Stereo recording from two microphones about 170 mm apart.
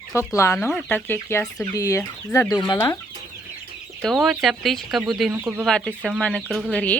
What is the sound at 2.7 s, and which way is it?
Speech, 25° left (ahead or behind).